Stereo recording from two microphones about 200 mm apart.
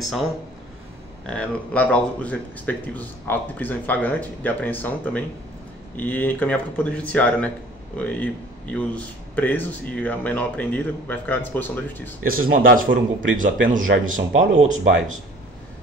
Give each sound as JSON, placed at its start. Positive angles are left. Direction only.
{"t": 1.2, "sound": "a man's voice", "side_deg": 5}
{"t": 12.2, "sound": "a man's voice", "side_deg": -45}
{"t": 12.9, "sound": "speech", "side_deg": -75}
{"t": 13.7, "sound": "a man's voice", "side_deg": -40}